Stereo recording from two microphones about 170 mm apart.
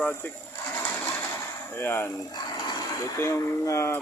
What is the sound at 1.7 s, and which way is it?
Speech, 15° left (ahead or behind).